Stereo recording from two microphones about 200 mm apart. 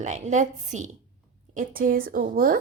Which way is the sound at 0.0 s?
35° right (ahead or behind).